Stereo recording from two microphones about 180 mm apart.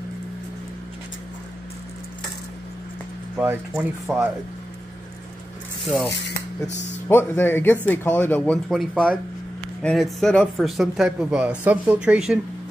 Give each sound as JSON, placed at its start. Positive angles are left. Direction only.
{"t": 3.3, "sound": "speech", "side_deg": -10}
{"t": 7.1, "sound": "speech", "side_deg": 10}